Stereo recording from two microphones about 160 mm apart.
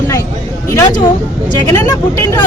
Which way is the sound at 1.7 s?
15° left (ahead or behind).